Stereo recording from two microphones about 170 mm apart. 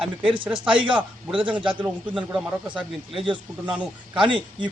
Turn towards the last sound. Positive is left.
turn(degrees=-30)  # may be behind; listen again after turning